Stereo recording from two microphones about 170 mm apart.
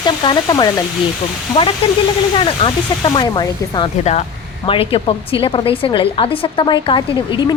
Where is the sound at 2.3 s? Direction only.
30° left (ahead or behind).